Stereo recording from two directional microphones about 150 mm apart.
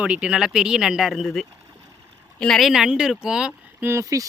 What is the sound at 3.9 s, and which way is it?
Speech, 20° right (ahead or behind).